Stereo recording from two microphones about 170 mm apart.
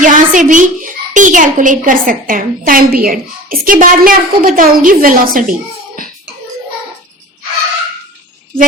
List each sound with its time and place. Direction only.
0.0 s a child's voice: 50° right (ahead or behind)